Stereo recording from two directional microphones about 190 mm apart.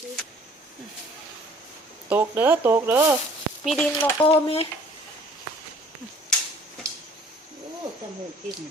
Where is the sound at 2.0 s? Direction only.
10° right (ahead or behind).